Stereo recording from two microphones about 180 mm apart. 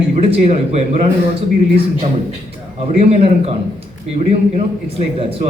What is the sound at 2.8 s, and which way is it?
A man's voice, 35° right (ahead or behind).